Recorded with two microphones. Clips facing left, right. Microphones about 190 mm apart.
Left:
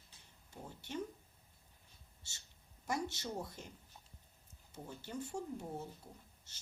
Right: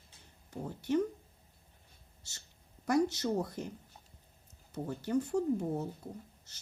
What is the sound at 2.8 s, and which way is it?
Speech, 65° right (ahead or behind).